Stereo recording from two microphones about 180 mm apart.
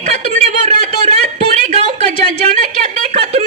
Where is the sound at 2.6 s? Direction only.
40° right (ahead or behind).